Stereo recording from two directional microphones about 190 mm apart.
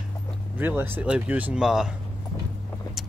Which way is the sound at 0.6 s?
10° right (ahead or behind).